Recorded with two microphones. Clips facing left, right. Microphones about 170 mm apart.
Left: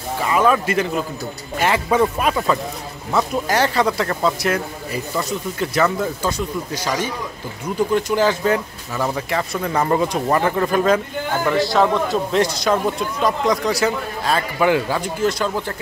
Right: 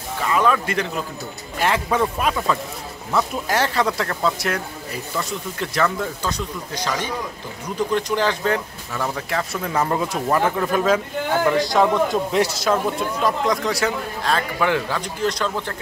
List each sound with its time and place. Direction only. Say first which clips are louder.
0.3 s a man's voice: left 3 dB; 10° left (ahead or behind)
11.4 s a man's voice: left 2 dB; 15° right (ahead or behind); by 15.6 s 5° left (ahead or behind)